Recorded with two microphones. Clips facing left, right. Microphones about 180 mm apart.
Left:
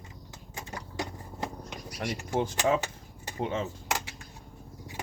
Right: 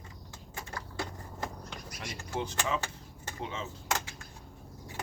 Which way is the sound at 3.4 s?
50° left (ahead or behind).